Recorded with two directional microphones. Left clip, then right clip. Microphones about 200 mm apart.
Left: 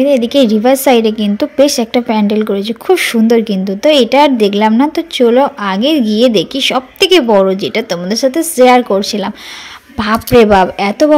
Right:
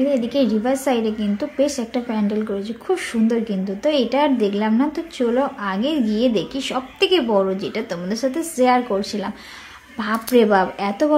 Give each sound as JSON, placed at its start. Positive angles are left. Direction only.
{"t": 0.0, "sound": "a woman's voice", "side_deg": 40}